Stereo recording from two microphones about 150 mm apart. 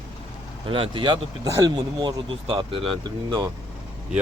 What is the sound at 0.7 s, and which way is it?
Speech, 35° right (ahead or behind).